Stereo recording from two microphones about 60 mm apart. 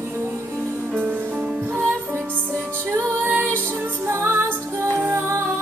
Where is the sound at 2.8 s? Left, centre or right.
Right.